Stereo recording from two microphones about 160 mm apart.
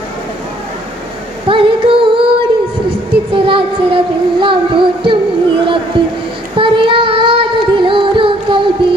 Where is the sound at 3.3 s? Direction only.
35° right (ahead or behind).